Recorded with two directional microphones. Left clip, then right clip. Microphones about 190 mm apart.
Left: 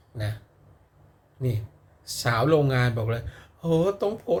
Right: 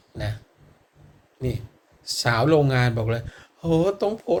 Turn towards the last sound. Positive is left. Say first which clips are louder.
# right 2 dB
turn(degrees=15)  # may be behind; listen again after turning